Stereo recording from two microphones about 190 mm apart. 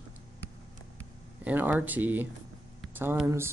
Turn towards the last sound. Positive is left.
turn(degrees=-10)  # may be behind; listen again after turning